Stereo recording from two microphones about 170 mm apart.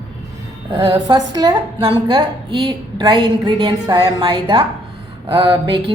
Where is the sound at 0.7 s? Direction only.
25° right (ahead or behind).